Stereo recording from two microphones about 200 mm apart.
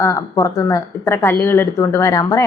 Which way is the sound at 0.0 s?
15° left (ahead or behind).